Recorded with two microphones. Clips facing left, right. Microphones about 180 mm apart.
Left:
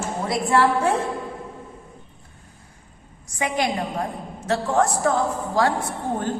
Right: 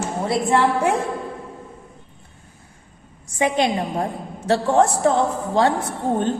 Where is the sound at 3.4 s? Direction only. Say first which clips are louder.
Right 4 dB; 25° right (ahead or behind).